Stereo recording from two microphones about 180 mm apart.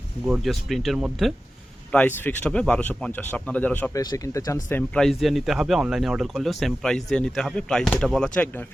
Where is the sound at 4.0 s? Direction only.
20° left (ahead or behind).